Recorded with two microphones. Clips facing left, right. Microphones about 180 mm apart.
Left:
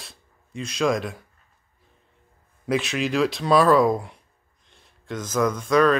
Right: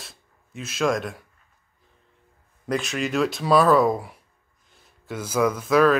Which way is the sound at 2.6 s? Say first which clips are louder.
Left 2 dB; centre (ahead or behind).